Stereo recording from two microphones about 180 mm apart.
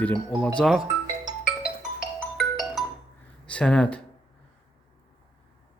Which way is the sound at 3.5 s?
5° left (ahead or behind).